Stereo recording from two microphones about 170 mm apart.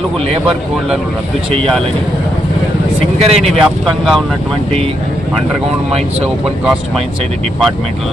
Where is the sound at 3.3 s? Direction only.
Centre (ahead or behind).